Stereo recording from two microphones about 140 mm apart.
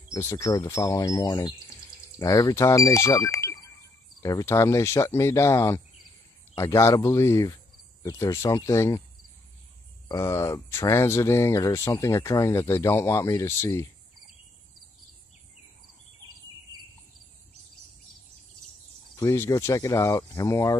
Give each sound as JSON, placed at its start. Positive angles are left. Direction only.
{"t": 0.1, "sound": "speech", "side_deg": 20}
{"t": 10.0, "sound": "speech", "side_deg": 20}
{"t": 16.2, "sound": "bird", "side_deg": -25}
{"t": 19.1, "sound": "speech", "side_deg": 20}